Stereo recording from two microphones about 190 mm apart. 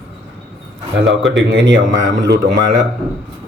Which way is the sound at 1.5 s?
75° right (ahead or behind).